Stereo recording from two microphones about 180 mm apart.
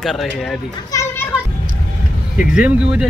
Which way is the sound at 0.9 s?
15° left (ahead or behind).